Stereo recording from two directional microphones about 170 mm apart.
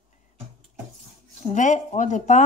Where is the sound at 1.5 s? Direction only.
45° left (ahead or behind).